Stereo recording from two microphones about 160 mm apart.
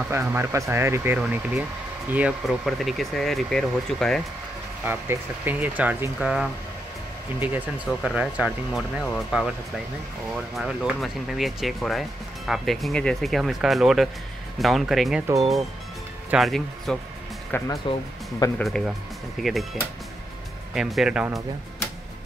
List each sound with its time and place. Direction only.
0.1 s speech: 15° right (ahead or behind); by 4.2 s 5° left (ahead or behind)
4.8 s speech: 15° right (ahead or behind)
16.3 s speech: centre (ahead or behind)
17.5 s speech: 15° left (ahead or behind)
18.6 s speech: centre (ahead or behind)
20.7 s speech: 5° right (ahead or behind)